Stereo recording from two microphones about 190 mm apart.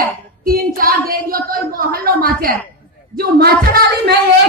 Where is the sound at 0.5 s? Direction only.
50° right (ahead or behind).